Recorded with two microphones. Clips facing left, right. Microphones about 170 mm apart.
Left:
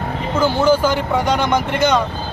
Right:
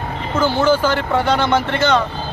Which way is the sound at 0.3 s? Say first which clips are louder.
Left 1 dB; 10° left (ahead or behind).